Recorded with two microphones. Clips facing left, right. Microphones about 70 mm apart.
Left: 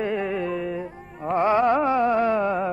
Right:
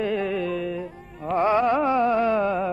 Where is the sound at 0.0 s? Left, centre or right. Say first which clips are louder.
Even; centre.